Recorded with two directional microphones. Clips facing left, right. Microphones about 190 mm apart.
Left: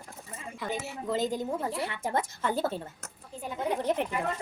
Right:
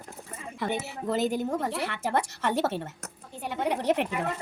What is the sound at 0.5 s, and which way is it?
A woman's voice, 65° right (ahead or behind).